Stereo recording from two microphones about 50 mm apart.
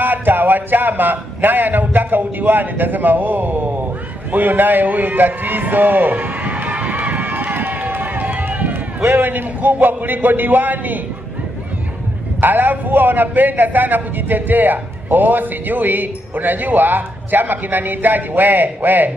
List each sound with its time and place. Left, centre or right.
0.0 s a man's voice: right
7.9 s run: right
9.0 s a man's voice: right
12.4 s a man's voice: right